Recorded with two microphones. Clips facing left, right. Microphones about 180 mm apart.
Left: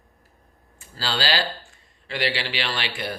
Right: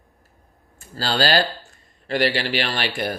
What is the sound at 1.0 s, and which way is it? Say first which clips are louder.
Speech: right 5 dB; 45° right (ahead or behind).